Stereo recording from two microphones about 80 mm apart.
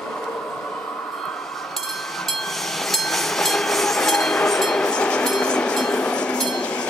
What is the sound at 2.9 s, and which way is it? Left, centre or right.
Train, centre.